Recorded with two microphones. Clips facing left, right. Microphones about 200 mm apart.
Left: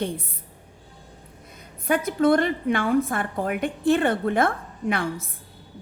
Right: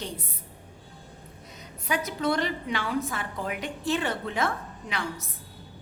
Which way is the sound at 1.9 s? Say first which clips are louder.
Left 8 dB; 50° left (ahead or behind).